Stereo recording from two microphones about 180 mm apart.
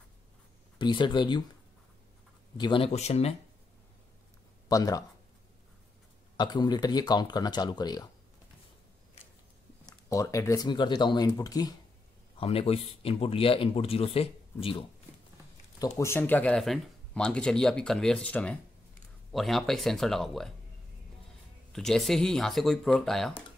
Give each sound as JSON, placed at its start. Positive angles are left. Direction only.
{"t": 0.7, "sound": "speech", "side_deg": 25}
{"t": 2.5, "sound": "speech", "side_deg": 25}
{"t": 4.6, "sound": "speech", "side_deg": 20}
{"t": 6.3, "sound": "speech", "side_deg": 25}
{"t": 9.8, "sound": "speech", "side_deg": 20}
{"t": 12.4, "sound": "speech", "side_deg": 35}
{"t": 15.8, "sound": "speech", "side_deg": 15}
{"t": 21.7, "sound": "speech", "side_deg": 0}